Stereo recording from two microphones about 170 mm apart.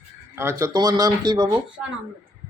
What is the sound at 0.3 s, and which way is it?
A man's voice, 15° right (ahead or behind).